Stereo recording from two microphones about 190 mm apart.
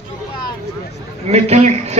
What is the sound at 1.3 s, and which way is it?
Speech, 35° right (ahead or behind).